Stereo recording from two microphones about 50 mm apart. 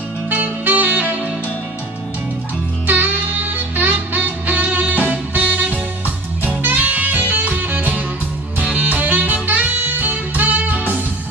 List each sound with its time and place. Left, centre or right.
0.3 s music: right
2.9 s music: right